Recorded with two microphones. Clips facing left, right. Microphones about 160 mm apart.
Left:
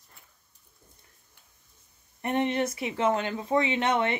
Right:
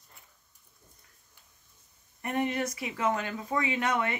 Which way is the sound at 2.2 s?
25° left (ahead or behind).